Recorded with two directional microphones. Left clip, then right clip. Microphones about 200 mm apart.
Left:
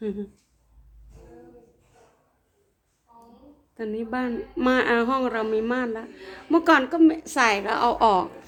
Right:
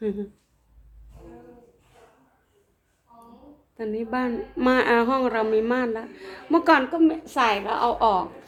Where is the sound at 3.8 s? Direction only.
10° left (ahead or behind).